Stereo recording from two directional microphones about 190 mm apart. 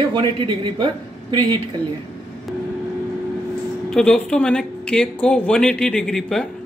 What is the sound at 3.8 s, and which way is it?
Speech, 5° left (ahead or behind).